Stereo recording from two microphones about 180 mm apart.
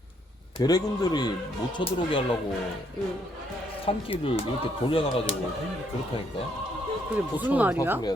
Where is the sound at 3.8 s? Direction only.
30° left (ahead or behind).